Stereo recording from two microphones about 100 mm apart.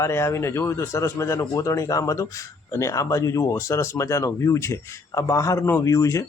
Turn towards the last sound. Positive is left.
turn(degrees=30)  # may be behind; listen again after turning